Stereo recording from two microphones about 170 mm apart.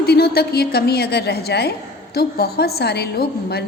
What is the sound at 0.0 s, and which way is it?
A woman's voice, 65° left (ahead or behind).